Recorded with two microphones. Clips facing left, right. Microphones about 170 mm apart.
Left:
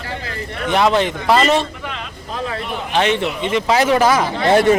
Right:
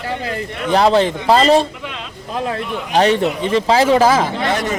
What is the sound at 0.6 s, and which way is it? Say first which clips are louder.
Speech: right 2 dB; 35° right (ahead or behind).